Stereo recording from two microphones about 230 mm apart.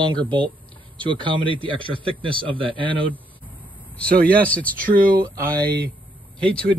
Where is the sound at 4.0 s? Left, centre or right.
Centre.